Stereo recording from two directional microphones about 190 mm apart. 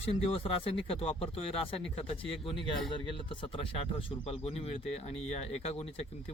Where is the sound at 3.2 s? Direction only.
25° left (ahead or behind).